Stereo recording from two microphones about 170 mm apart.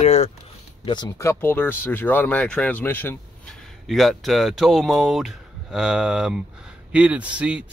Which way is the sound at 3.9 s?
Centre (ahead or behind).